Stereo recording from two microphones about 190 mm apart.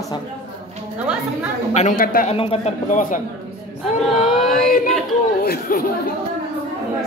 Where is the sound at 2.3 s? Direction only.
30° left (ahead or behind).